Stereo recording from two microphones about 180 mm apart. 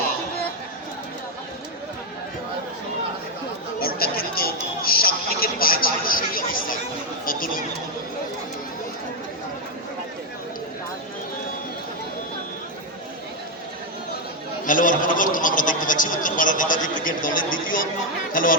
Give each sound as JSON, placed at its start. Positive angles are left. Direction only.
{"t": 3.8, "sound": "a man's voice", "side_deg": 55}
{"t": 14.7, "sound": "a man's voice", "side_deg": 50}